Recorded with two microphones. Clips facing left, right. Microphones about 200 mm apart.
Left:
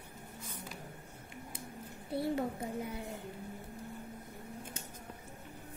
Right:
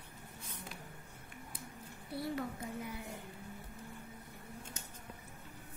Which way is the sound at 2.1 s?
25° left (ahead or behind).